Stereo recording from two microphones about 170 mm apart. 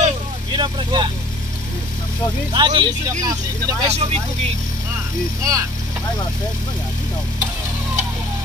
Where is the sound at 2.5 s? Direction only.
25° right (ahead or behind).